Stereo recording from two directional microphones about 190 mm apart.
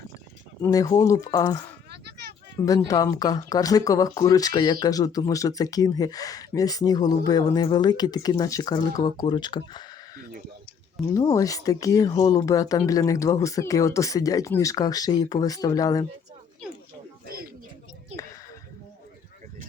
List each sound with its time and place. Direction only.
0.6 s a woman's voice: 20° left (ahead or behind)
11.1 s speech: 20° left (ahead or behind)